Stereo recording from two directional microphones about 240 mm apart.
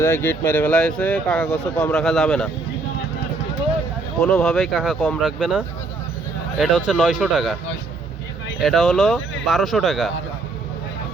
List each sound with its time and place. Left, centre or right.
0.0 s speech: centre
4.2 s speech: centre
8.6 s speech: centre